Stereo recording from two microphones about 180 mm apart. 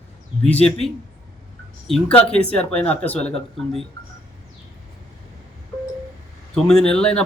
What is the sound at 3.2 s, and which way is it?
Speech, 35° left (ahead or behind).